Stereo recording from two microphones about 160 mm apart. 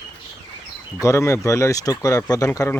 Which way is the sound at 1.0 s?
20° left (ahead or behind).